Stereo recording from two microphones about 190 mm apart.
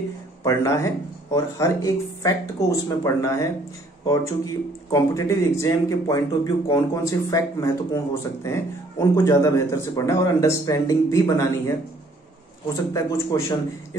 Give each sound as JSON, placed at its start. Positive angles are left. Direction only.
{"t": 0.4, "sound": "a man's voice", "side_deg": 15}
{"t": 12.9, "sound": "a man's voice", "side_deg": 15}